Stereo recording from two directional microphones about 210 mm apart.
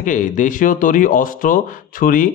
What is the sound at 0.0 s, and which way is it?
A man's voice, 40° left (ahead or behind).